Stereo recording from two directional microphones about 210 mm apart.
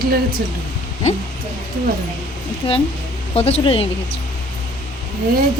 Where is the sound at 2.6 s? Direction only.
25° left (ahead or behind).